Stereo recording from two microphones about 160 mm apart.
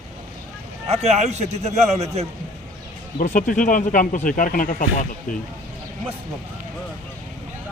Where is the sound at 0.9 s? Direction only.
45° right (ahead or behind).